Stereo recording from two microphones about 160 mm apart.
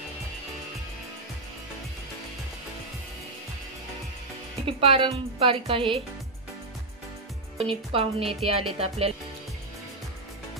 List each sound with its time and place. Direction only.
4.6 s a woman's voice: 35° right (ahead or behind)
7.5 s a woman's voice: 35° right (ahead or behind)